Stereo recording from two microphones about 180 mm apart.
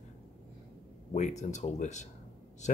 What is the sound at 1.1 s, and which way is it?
Speech, 40° left (ahead or behind).